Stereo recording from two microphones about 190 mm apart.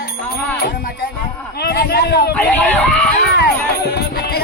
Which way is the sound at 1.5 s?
55° left (ahead or behind).